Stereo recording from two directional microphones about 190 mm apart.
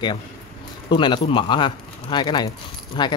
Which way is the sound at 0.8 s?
25° left (ahead or behind).